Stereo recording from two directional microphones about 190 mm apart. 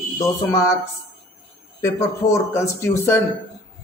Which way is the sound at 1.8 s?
15° left (ahead or behind).